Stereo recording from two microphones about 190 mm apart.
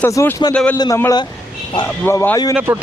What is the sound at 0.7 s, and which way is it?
Speech, 15° left (ahead or behind).